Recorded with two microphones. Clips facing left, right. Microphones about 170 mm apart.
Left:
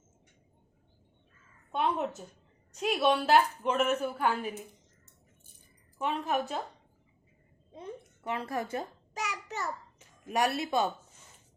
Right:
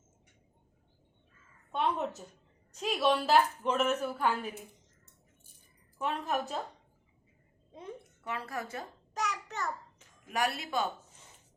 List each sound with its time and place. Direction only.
1.7 s a woman's voice: 5° left (ahead or behind)
6.0 s a woman's voice: centre (ahead or behind)
8.3 s speech: 25° left (ahead or behind)
9.1 s a sound: 5° left (ahead or behind)
10.2 s speech: 25° left (ahead or behind)